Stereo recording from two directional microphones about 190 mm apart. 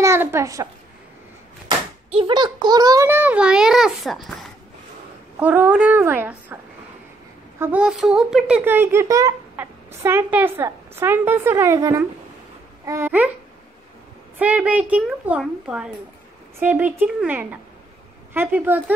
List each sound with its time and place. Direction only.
0.0 s a sound: 15° right (ahead or behind)
1.7 s speech: 30° right (ahead or behind); by 13.3 s 10° right (ahead or behind)
14.4 s speech: 5° right (ahead or behind)